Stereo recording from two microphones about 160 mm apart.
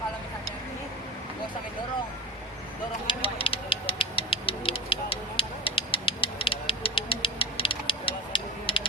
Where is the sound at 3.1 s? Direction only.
35° left (ahead or behind).